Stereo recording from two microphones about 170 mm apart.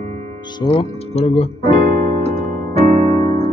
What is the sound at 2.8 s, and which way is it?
Electric piano, 45° right (ahead or behind).